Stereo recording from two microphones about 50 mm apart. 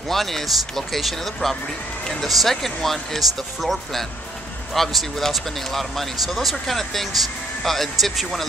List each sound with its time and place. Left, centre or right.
0.1 s speech: centre